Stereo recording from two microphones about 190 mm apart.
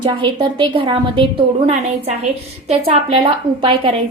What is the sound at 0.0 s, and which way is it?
A woman's voice, 25° right (ahead or behind).